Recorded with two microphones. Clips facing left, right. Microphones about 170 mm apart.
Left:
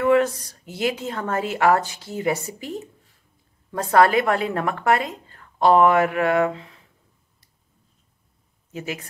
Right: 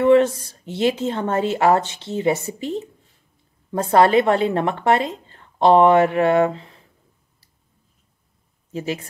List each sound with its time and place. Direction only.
0.0 s a woman's voice: 30° right (ahead or behind)
3.9 s a woman's voice: 30° right (ahead or behind)
8.7 s a woman's voice: 30° right (ahead or behind)